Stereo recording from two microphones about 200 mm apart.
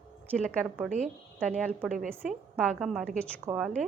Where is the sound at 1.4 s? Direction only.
5° left (ahead or behind).